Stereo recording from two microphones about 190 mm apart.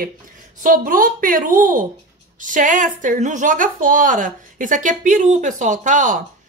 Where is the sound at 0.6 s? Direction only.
45° right (ahead or behind).